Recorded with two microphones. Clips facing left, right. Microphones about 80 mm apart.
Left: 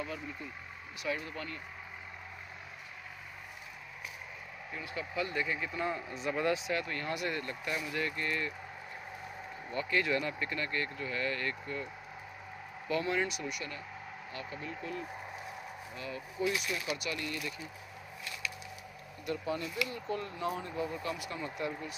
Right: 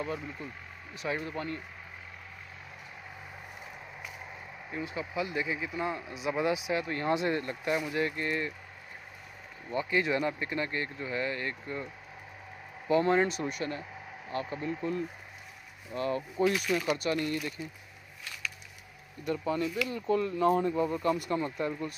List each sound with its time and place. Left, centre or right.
1.0 s speech: right
4.6 s speech: centre
9.7 s speech: centre
13.0 s speech: right
15.9 s speech: right
19.2 s speech: right